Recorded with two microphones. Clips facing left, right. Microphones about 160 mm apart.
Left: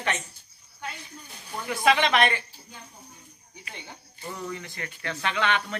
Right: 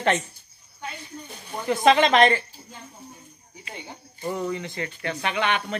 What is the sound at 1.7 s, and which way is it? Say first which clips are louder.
Speech: right 5 dB; 45° right (ahead or behind).